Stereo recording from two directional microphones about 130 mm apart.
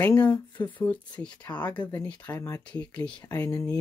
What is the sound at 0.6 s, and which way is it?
Speech, 10° left (ahead or behind).